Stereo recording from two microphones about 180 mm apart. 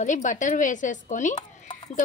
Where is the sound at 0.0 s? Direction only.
45° left (ahead or behind).